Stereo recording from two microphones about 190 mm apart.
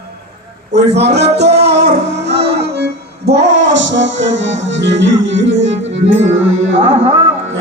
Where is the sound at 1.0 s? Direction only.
60° right (ahead or behind).